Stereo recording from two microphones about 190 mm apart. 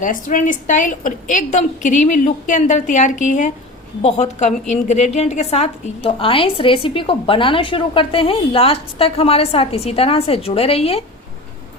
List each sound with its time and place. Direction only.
0.0 s a woman's voice: 45° left (ahead or behind)